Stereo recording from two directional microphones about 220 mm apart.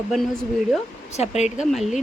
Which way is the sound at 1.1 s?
30° left (ahead or behind).